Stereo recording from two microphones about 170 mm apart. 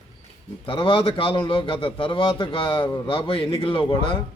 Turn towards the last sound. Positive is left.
turn(degrees=30)  # may be behind; listen again after turning